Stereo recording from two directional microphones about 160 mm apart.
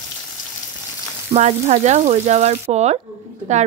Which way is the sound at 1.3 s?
45° right (ahead or behind).